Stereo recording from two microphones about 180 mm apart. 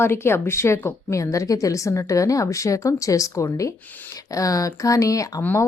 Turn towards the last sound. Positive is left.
turn(degrees=15)  # may be behind; listen again after turning